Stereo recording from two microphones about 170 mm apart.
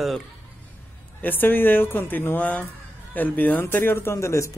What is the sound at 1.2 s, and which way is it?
Speech, 10° left (ahead or behind).